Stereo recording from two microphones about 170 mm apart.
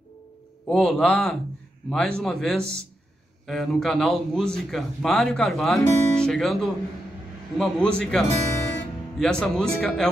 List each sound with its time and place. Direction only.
0.7 s a man's voice: 5° left (ahead or behind)